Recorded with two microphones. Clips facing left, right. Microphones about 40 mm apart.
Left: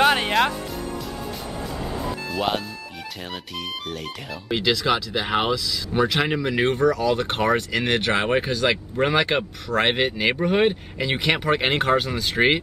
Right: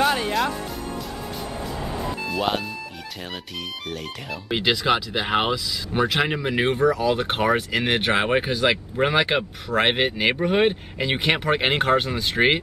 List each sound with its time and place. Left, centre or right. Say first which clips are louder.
0.0 s music: left 3 dB; left
1.9 s music: right 2 dB; centre
3.9 s speech: even; centre
4.6 s speech: right 1 dB; centre